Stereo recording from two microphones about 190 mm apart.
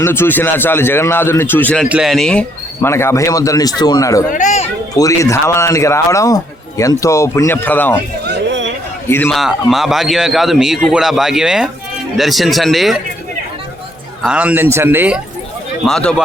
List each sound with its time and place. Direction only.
0.0 s a man's voice: 10° left (ahead or behind)
4.3 s speech: 40° left (ahead or behind)
4.9 s a man's voice: 15° left (ahead or behind)
8.3 s a sound: 70° right (ahead or behind)
9.0 s a man's voice: 10° left (ahead or behind)
9.3 s a man's voice: centre (ahead or behind)
14.2 s speech: 5° right (ahead or behind)
15.9 s a man's voice: 5° left (ahead or behind)